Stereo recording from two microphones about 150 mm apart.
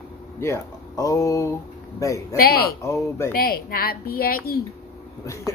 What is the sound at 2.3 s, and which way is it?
Speech, 90° left.